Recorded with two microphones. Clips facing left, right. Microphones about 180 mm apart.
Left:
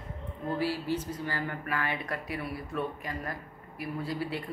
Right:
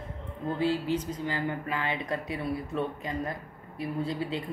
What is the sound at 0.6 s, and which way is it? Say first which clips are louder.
A woman's voice: right 5 dB; 20° right (ahead or behind).